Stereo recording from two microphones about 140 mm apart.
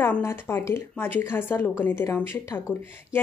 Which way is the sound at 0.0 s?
15° left (ahead or behind).